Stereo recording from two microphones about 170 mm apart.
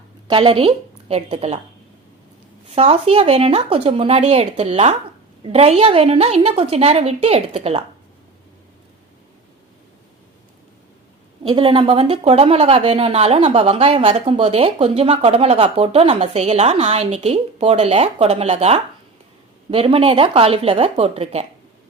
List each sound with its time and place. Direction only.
0.3 s a woman's voice: 30° right (ahead or behind)
2.6 s speech: 35° right (ahead or behind)
11.4 s speech: 30° right (ahead or behind)